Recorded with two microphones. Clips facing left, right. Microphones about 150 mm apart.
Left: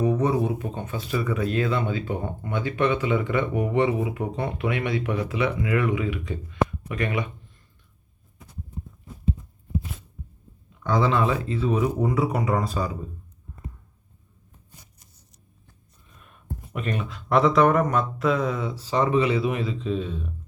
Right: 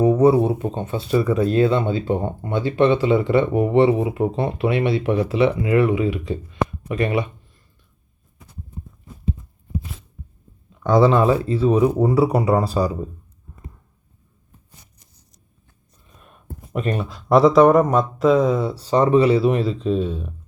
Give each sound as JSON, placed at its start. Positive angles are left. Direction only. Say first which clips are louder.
{"t": 0.0, "sound": "speech", "louder": "right 8 dB", "side_deg": -35}
{"t": 6.5, "sound": "a sound", "louder": "left 2 dB", "side_deg": -25}
{"t": 10.8, "sound": "speech", "louder": "right 7 dB", "side_deg": -35}
{"t": 16.7, "sound": "speech", "louder": "right 6 dB", "side_deg": -35}